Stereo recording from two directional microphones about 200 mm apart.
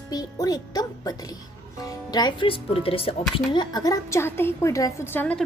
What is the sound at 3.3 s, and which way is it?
A woman's voice, 20° left (ahead or behind).